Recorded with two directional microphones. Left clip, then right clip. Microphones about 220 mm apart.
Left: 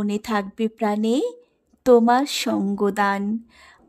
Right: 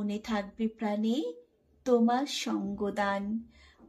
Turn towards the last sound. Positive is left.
turn(degrees=50)  # may be behind; listen again after turning